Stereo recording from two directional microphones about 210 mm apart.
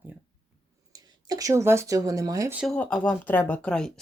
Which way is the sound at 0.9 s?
15° right (ahead or behind).